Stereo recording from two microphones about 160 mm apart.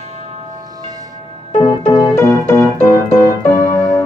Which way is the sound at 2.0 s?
15° left (ahead or behind).